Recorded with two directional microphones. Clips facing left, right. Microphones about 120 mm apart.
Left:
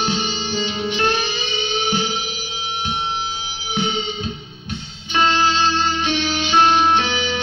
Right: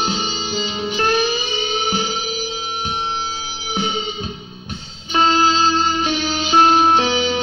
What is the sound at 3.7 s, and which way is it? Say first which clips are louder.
Music: even; 40° right (ahead or behind).